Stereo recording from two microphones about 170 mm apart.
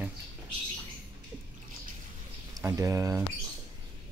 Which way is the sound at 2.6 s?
20° right (ahead or behind).